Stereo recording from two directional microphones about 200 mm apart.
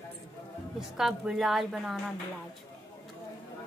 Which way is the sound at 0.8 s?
Centre (ahead or behind).